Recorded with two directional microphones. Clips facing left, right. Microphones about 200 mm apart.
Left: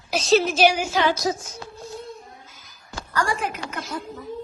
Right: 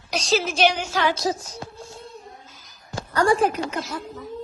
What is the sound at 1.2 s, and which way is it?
Speech, 35° right (ahead or behind).